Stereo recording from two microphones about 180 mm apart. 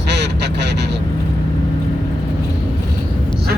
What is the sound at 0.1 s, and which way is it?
Quack, 70° right (ahead or behind).